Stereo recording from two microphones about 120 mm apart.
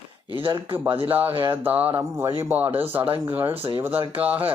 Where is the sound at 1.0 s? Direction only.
15° right (ahead or behind).